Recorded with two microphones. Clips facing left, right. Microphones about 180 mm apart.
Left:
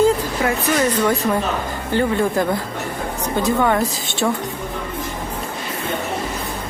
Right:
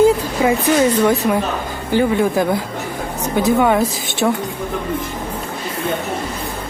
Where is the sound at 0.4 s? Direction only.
15° right (ahead or behind).